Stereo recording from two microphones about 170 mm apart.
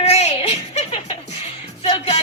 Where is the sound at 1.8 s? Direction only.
35° left (ahead or behind).